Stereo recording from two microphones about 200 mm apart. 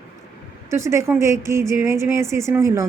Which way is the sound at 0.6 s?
15° right (ahead or behind).